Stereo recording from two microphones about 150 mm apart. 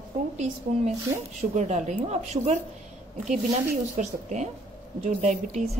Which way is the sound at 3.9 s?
55° right (ahead or behind).